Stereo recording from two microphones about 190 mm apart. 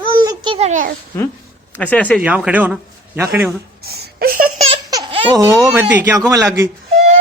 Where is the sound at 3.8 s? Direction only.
55° right (ahead or behind).